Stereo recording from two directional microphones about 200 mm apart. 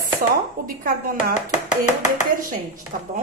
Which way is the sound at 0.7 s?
45° right (ahead or behind).